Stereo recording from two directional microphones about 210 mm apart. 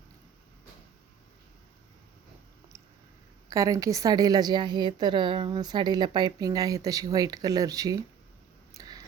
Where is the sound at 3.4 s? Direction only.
15° right (ahead or behind).